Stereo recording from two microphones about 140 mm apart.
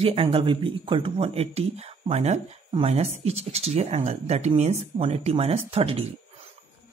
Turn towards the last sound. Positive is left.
turn(degrees=-45)  # may be behind; listen again after turning